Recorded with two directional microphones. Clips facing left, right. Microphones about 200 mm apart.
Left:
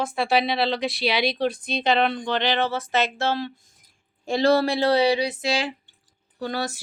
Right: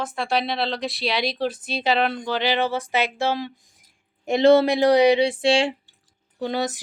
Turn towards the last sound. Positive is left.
turn(degrees=-20)  # may be behind; listen again after turning